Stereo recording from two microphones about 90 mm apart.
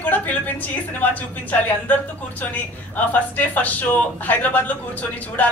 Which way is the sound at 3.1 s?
20° left (ahead or behind).